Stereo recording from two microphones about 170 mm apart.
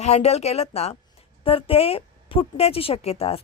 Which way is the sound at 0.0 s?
40° left (ahead or behind).